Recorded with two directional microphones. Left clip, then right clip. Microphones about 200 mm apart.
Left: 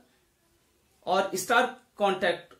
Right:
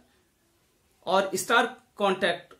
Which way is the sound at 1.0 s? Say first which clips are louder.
Right 1 dB; 25° right (ahead or behind).